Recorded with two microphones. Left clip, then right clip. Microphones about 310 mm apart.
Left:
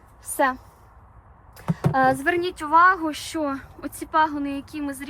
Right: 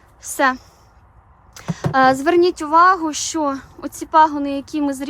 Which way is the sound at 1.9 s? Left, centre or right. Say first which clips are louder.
Right 6 dB; centre.